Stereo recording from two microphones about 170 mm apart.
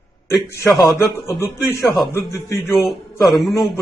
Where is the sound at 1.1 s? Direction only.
15° right (ahead or behind).